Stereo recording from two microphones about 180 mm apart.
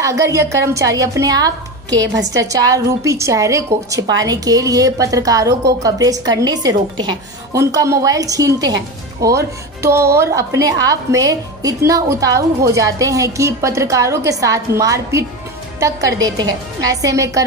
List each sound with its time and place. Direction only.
0.0 s a woman's voice: 15° right (ahead or behind)